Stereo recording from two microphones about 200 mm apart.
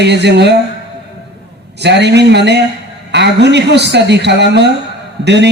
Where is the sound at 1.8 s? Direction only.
60° right (ahead or behind).